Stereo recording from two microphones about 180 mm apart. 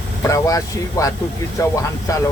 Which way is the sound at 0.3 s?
20° left (ahead or behind).